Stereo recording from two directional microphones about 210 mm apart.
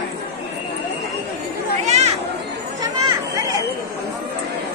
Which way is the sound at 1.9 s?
30° right (ahead or behind).